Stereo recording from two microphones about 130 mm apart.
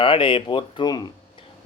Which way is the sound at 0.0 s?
40° left (ahead or behind).